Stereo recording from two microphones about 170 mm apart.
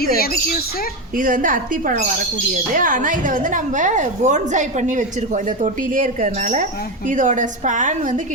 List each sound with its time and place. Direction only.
1.1 s a woman's voice: 55° right (ahead or behind)